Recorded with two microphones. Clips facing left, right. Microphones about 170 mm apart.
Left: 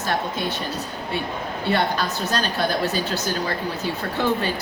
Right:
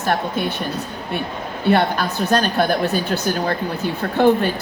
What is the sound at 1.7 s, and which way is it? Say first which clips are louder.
A woman's voice: right 5 dB; 55° right (ahead or behind).